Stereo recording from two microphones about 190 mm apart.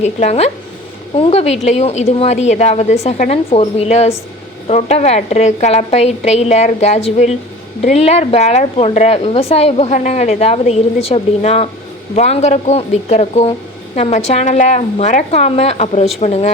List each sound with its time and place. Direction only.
0.0 s a woman's voice: 35° left (ahead or behind)